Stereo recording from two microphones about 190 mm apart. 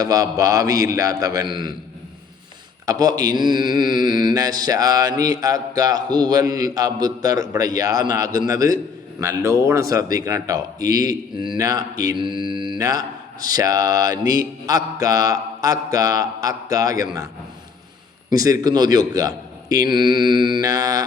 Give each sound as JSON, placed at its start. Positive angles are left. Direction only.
{"t": 0.0, "sound": "mantra", "side_deg": -20}
{"t": 2.8, "sound": "mantra", "side_deg": -20}
{"t": 8.4, "sound": "a man's voice", "side_deg": -20}
{"t": 9.9, "sound": "mantra", "side_deg": -20}
{"t": 18.3, "sound": "mantra", "side_deg": -20}